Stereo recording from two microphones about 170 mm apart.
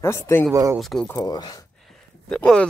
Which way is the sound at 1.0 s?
20° left (ahead or behind).